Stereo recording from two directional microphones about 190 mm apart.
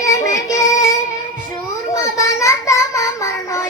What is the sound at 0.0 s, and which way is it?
Child singing, 15° left (ahead or behind).